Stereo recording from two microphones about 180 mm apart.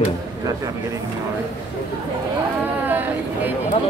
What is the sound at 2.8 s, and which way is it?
Chatter, 10° right (ahead or behind).